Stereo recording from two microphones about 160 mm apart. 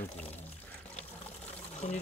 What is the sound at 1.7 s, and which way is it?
Speech, 45° left (ahead or behind).